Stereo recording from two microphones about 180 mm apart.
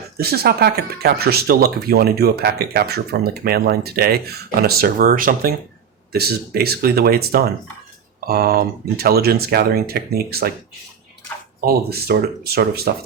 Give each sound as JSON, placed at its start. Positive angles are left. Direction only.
{"t": 0.2, "sound": "speech", "side_deg": -60}
{"t": 11.6, "sound": "speech", "side_deg": -60}